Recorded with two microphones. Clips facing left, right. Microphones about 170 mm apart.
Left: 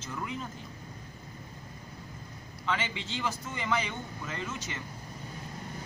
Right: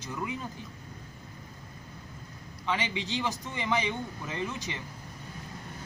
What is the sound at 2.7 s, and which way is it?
Speech, 15° right (ahead or behind).